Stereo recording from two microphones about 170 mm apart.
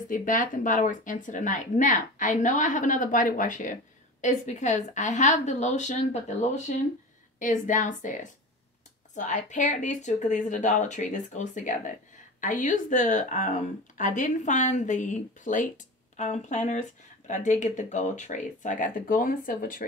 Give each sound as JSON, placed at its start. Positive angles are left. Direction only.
{"t": 0.1, "sound": "a woman's voice", "side_deg": 50}